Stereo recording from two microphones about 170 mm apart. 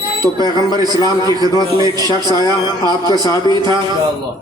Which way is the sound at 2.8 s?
25° right (ahead or behind).